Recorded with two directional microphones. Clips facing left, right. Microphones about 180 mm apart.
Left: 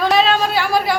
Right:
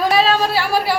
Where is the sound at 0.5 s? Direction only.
5° right (ahead or behind).